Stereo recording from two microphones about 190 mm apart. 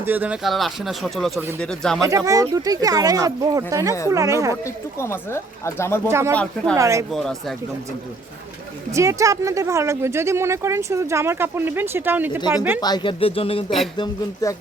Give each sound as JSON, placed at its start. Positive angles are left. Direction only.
{"t": 0.0, "sound": "speech", "side_deg": -10}
{"t": 2.0, "sound": "speech", "side_deg": -15}
{"t": 4.6, "sound": "speech", "side_deg": 15}
{"t": 6.1, "sound": "speech", "side_deg": -15}
{"t": 6.3, "sound": "speech", "side_deg": 5}
{"t": 6.7, "sound": "speech", "side_deg": -15}
{"t": 7.1, "sound": "speech", "side_deg": 0}
{"t": 8.9, "sound": "speech", "side_deg": -15}
{"t": 12.8, "sound": "speech", "side_deg": 25}